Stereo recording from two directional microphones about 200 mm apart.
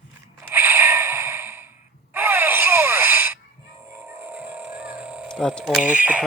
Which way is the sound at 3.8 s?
10° right (ahead or behind).